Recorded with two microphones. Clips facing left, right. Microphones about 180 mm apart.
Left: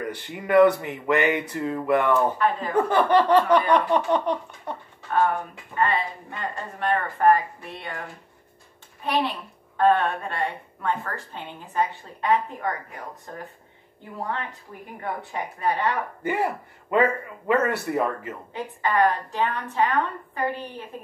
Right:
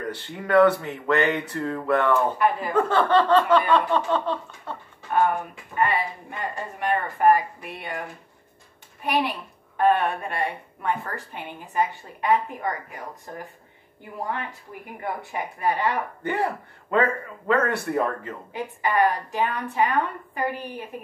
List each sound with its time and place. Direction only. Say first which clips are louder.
0.0 s a man's voice: even; 15° left (ahead or behind)
2.3 s a woman's voice: right 1 dB; 10° right (ahead or behind)
2.9 s a man's voice: left 1 dB; 15° left (ahead or behind)
5.8 s a woman's voice: even; 15° right (ahead or behind)
9.0 s a woman's voice: even; 15° right (ahead or behind)
15.0 s a woman's voice: even; 10° right (ahead or behind)
16.2 s a man's voice: even; 10° left (ahead or behind)
18.5 s a woman's voice: even; 10° right (ahead or behind)